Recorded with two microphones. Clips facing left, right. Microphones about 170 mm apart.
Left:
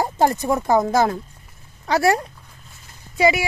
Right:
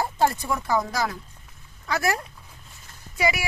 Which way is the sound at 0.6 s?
50° left (ahead or behind).